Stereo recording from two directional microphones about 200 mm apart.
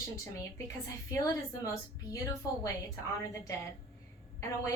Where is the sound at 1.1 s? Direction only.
15° left (ahead or behind).